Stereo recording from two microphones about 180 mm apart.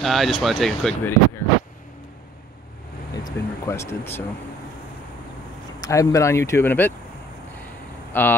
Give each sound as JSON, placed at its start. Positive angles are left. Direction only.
{"t": 0.0, "sound": "speech", "side_deg": 0}
{"t": 3.3, "sound": "speech", "side_deg": 15}
{"t": 5.8, "sound": "speech", "side_deg": 15}
{"t": 8.1, "sound": "speech", "side_deg": 10}